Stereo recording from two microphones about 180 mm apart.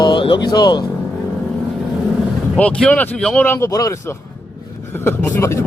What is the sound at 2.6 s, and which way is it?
Speech, 5° left (ahead or behind).